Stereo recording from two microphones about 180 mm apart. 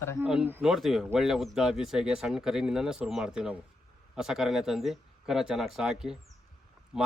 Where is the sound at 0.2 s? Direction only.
10° right (ahead or behind).